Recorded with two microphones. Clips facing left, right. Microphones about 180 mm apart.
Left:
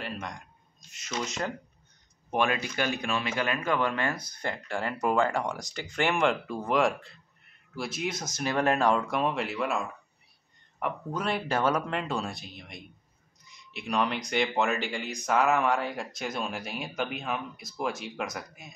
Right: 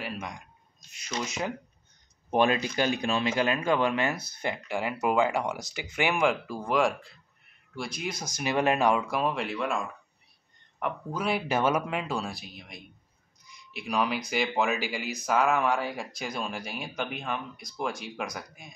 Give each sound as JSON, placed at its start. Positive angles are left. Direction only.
{"t": 0.0, "sound": "speech", "side_deg": -5}
{"t": 2.3, "sound": "speech", "side_deg": -25}
{"t": 4.1, "sound": "speech", "side_deg": -10}
{"t": 10.8, "sound": "speech", "side_deg": 0}